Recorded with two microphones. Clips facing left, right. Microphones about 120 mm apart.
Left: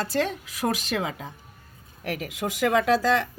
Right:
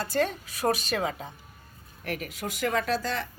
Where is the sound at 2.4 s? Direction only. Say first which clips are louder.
Left 6 dB; 90° left.